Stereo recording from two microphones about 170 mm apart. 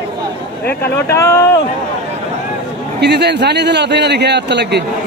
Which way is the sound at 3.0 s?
80° right.